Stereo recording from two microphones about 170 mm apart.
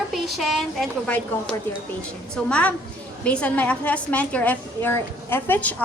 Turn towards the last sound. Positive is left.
turn(degrees=10)  # may be behind; listen again after turning